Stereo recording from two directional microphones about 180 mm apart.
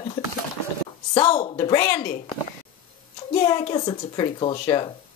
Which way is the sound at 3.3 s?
25° left (ahead or behind).